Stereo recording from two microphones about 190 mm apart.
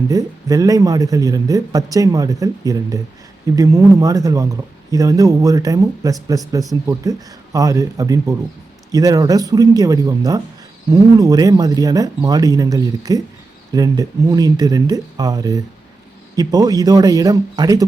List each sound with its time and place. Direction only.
0.1 s speech: 20° right (ahead or behind)